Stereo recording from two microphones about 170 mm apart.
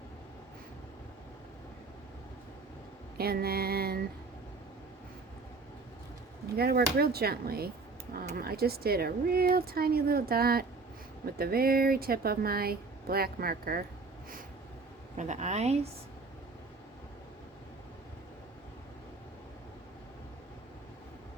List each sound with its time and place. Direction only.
3.2 s speech: 65° right (ahead or behind)
6.6 s speech: 65° right (ahead or behind)
15.1 s a woman's voice: 45° right (ahead or behind)